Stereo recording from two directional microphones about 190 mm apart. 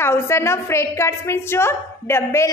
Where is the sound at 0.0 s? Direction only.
15° left (ahead or behind).